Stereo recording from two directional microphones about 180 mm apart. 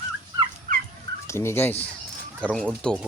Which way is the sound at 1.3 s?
15° left (ahead or behind).